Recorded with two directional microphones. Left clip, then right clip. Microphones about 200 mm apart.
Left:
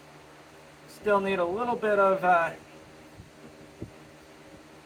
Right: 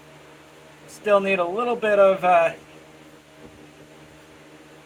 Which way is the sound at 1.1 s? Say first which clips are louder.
Right 6 dB; 10° left (ahead or behind).